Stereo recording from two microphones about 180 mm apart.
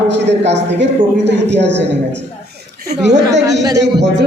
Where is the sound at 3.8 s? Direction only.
75° right (ahead or behind).